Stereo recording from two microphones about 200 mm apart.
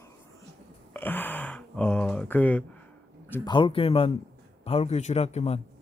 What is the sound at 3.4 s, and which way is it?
Speech, 25° left (ahead or behind).